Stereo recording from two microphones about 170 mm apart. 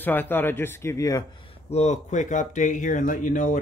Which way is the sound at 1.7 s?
40° left (ahead or behind).